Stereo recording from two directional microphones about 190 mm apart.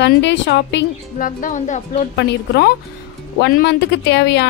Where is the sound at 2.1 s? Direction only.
65° left (ahead or behind).